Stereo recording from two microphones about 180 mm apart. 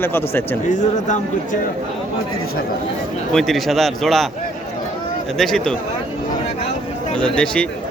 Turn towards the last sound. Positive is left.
turn(degrees=5)  # may be behind; listen again after turning